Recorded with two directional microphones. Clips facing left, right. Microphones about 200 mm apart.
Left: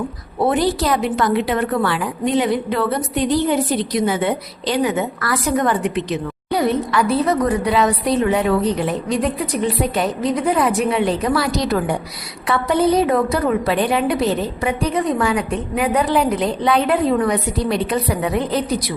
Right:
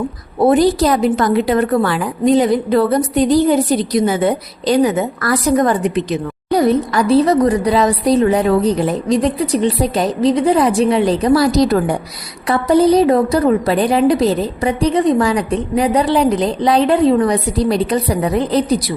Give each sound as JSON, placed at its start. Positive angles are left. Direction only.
{"t": 0.4, "sound": "a woman's voice", "side_deg": -40}